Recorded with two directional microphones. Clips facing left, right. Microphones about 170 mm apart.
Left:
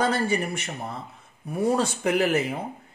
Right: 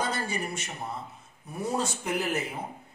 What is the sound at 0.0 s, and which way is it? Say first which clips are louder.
Speech: left 7 dB; 60° left (ahead or behind).